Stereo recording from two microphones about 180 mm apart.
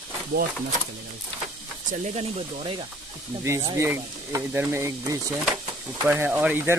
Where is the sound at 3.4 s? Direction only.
15° right (ahead or behind).